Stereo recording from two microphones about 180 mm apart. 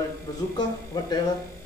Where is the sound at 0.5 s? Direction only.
25° left (ahead or behind).